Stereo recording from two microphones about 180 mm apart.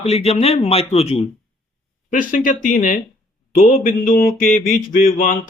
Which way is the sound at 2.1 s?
50° left (ahead or behind).